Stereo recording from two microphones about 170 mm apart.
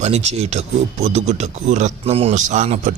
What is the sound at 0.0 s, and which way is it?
Speech, 40° right (ahead or behind).